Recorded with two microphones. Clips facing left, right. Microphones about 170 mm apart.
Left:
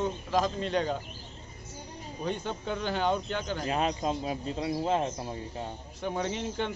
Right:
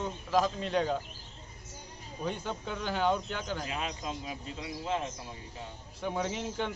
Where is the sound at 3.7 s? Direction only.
40° left (ahead or behind).